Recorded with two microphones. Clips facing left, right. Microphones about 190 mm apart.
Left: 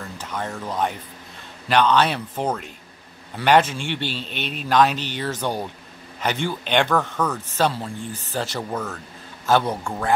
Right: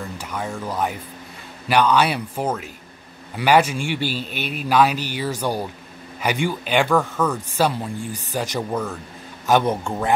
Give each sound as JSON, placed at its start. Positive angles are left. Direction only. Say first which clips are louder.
{"t": 0.2, "sound": "a man's voice", "louder": "left 1 dB", "side_deg": -10}